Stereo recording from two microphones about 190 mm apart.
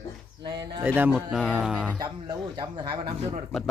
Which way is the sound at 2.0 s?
20° right (ahead or behind).